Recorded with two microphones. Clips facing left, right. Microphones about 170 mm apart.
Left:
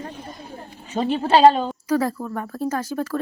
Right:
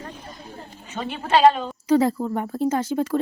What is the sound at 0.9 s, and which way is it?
Speech, 35° left (ahead or behind).